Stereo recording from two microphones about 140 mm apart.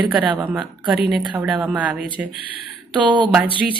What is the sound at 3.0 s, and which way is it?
Speech, 35° right (ahead or behind).